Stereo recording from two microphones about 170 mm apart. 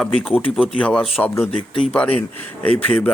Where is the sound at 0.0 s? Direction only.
5° left (ahead or behind).